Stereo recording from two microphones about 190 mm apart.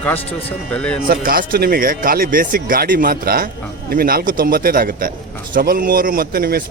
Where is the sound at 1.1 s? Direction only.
50° right (ahead or behind).